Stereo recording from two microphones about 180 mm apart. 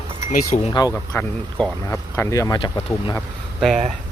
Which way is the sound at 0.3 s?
45° left (ahead or behind).